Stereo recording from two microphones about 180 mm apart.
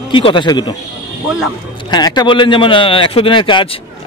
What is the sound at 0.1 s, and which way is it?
Speech, 25° left (ahead or behind).